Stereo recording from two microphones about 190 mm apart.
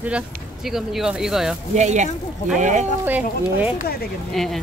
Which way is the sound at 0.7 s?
Centre (ahead or behind).